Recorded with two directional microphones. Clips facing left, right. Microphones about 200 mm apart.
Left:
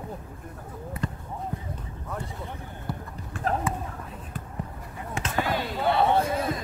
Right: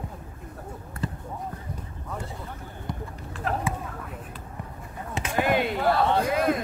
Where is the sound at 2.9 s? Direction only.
5° left (ahead or behind).